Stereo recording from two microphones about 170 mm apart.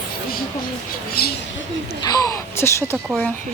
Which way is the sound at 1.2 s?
65° left (ahead or behind).